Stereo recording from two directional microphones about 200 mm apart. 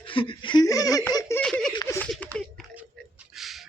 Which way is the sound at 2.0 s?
5° left (ahead or behind).